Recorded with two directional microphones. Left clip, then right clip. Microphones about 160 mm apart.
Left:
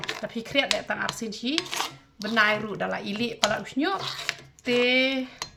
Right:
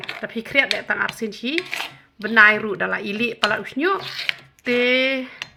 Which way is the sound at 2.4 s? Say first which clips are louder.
Right 9 dB; 35° right (ahead or behind).